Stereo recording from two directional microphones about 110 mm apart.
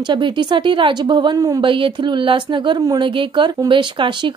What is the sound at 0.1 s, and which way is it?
A woman's voice, 45° right (ahead or behind).